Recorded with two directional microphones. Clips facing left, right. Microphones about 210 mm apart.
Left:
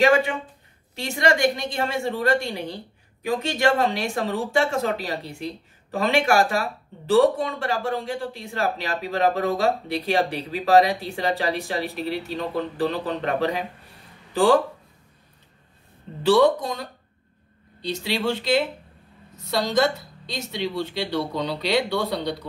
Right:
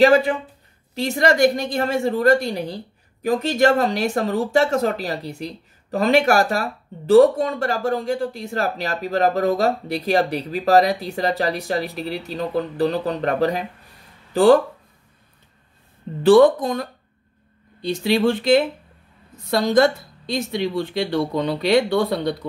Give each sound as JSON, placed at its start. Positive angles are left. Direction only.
{"t": 0.0, "sound": "a woman's voice", "side_deg": -35}
{"t": 16.2, "sound": "a woman's voice", "side_deg": -50}
{"t": 17.8, "sound": "a woman's voice", "side_deg": -50}